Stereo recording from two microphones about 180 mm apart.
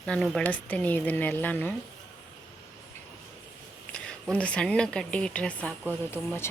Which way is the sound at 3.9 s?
5° left (ahead or behind).